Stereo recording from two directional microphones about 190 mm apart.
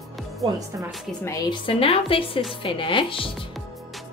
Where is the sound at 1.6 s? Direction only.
30° left (ahead or behind).